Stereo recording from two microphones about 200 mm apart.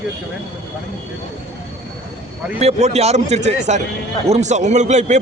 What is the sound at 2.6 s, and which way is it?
A man's voice, 30° right (ahead or behind).